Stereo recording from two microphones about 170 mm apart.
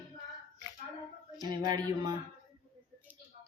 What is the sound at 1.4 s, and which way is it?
Speech, 25° right (ahead or behind).